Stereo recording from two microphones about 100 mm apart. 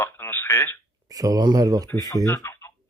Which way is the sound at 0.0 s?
25° left (ahead or behind).